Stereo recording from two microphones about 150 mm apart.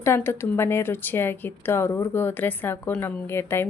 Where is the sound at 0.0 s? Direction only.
15° left (ahead or behind).